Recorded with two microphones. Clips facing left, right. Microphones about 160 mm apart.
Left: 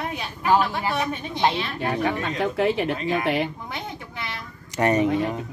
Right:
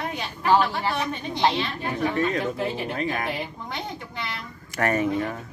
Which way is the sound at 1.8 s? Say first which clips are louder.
Left 1 dB; 75° left (ahead or behind).